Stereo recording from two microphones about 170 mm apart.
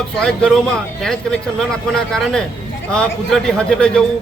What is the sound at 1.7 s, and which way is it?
A man's voice, 5° left (ahead or behind).